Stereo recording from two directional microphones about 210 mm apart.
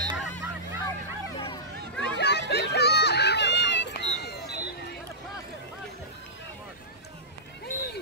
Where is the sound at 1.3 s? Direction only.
20° left (ahead or behind).